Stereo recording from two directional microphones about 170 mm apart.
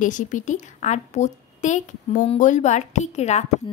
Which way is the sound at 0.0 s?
50° left (ahead or behind).